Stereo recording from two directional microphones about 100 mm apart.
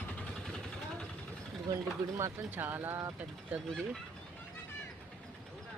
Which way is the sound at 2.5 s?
20° right (ahead or behind).